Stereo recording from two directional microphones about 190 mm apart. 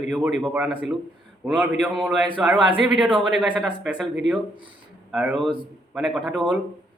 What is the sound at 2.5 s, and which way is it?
Speech, 25° right (ahead or behind).